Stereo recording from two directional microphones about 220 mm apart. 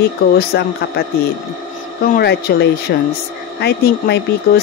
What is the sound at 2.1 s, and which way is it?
Speech, 45° left (ahead or behind).